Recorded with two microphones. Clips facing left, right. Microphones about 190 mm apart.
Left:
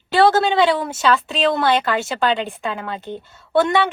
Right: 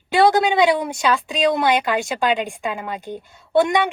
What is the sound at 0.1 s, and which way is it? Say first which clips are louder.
A woman's voice: left 1 dB; 15° right (ahead or behind).